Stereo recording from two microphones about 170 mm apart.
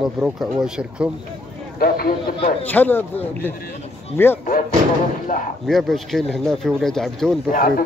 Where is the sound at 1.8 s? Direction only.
65° left (ahead or behind).